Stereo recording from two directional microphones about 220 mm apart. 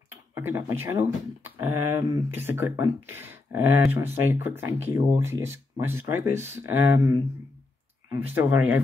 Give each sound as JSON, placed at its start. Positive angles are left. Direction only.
{"t": 0.3, "sound": "speech", "side_deg": -10}